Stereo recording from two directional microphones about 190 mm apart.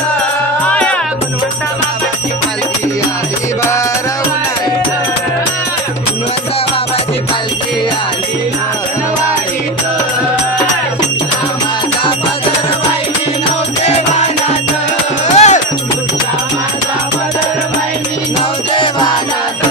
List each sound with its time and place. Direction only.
0.7 s music: 5° left (ahead or behind)
13.8 s music: 35° left (ahead or behind)
15.2 s music: 40° left (ahead or behind)
18.8 s music: 25° left (ahead or behind)